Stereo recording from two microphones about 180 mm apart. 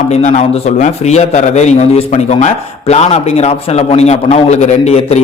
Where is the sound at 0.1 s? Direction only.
40° left (ahead or behind).